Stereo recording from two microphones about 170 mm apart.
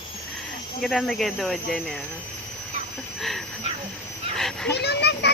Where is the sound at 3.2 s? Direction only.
Centre (ahead or behind).